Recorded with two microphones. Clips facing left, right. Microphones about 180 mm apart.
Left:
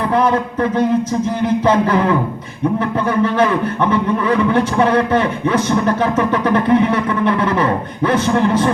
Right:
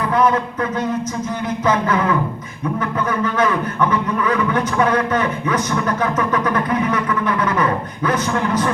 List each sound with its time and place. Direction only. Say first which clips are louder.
0.1 s speech: even; 30° left (ahead or behind)
3.2 s a man's voice: left 3 dB; 30° left (ahead or behind)